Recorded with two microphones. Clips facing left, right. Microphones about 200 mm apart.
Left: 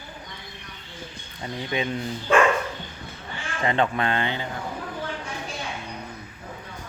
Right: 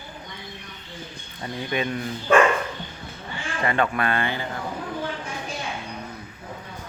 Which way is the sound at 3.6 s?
20° left (ahead or behind).